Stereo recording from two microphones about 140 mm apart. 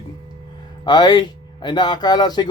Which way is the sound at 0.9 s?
30° left (ahead or behind).